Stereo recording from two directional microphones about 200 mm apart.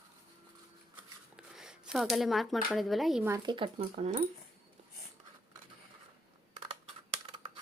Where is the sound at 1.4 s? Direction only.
5° right (ahead or behind).